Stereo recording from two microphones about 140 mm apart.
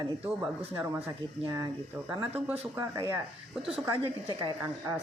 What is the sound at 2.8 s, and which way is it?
Speech, 20° right (ahead or behind).